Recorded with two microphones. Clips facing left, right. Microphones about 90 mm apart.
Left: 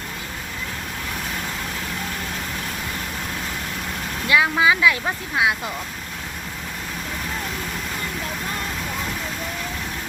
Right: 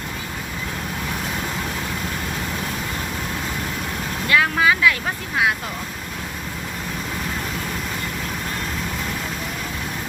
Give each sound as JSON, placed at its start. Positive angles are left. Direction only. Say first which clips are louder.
{"t": 4.3, "sound": "vehicle", "louder": "even", "side_deg": 15}
{"t": 5.0, "sound": "speech", "louder": "even", "side_deg": 20}